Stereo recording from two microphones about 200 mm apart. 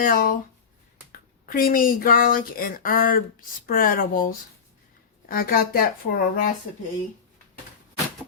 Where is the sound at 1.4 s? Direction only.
45° left (ahead or behind).